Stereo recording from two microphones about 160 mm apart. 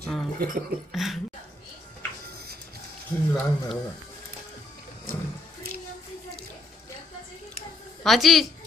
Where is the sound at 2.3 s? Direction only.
75° right (ahead or behind).